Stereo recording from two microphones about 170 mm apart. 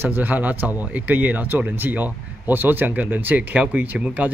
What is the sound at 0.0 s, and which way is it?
Speech, 10° right (ahead or behind).